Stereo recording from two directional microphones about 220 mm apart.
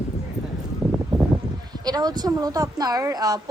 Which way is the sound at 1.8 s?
20° right (ahead or behind).